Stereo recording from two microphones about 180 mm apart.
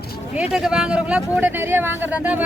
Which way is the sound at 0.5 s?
5° right (ahead or behind).